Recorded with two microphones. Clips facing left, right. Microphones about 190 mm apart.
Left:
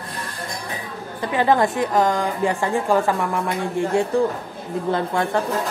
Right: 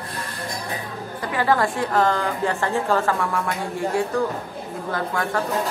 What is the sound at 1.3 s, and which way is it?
A woman's voice, 20° left (ahead or behind).